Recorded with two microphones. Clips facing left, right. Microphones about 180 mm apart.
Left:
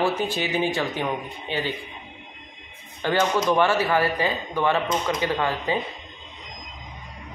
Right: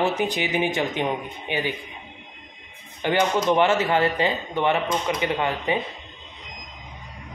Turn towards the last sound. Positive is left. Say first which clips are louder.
# even
turn(degrees=-20)  # may be behind; listen again after turning